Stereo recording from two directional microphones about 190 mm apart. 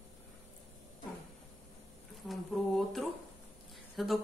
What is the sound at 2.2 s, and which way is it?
Speech, centre (ahead or behind).